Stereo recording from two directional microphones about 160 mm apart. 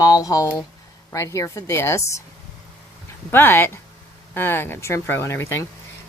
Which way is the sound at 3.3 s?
15° left (ahead or behind).